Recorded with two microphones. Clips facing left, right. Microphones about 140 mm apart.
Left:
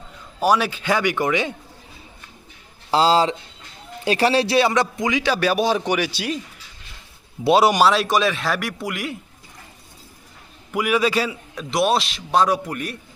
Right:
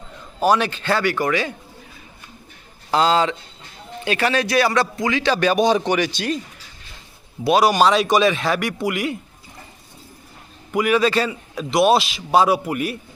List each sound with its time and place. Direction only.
0.4 s a man's voice: 10° left (ahead or behind)
2.9 s a man's voice: 30° left (ahead or behind); by 6.4 s 10° left (ahead or behind)
7.4 s speech: 25° left (ahead or behind)
7.8 s a man's voice: centre (ahead or behind)
10.7 s a man's voice: 5° left (ahead or behind)
11.5 s a man's voice: centre (ahead or behind)